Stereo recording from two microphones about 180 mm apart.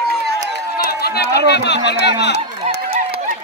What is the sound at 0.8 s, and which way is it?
Run, 60° left (ahead or behind).